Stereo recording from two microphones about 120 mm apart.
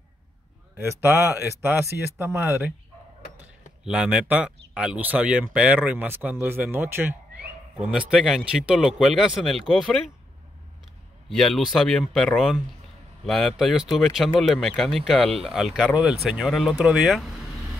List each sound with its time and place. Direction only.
0.7 s speech: 20° right (ahead or behind)
3.8 s speech: 10° right (ahead or behind)
7.8 s speech: 10° right (ahead or behind)
11.2 s speech: centre (ahead or behind)